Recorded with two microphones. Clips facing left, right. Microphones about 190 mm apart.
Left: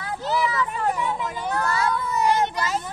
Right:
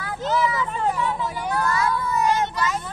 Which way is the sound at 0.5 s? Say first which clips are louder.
Even; 20° right (ahead or behind).